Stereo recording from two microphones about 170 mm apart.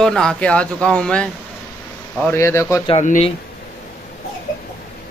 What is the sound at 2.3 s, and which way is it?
Speech, 15° left (ahead or behind).